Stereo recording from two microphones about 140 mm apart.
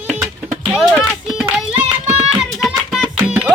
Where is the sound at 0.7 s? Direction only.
5° right (ahead or behind).